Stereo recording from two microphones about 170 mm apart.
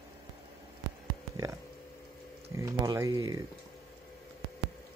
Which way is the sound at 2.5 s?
20° right (ahead or behind).